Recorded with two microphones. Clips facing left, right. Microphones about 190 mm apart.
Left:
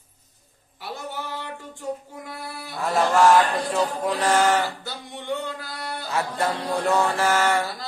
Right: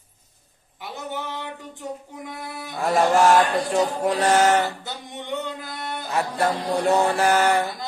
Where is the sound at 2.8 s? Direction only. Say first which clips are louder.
Right 1 dB; 30° right (ahead or behind).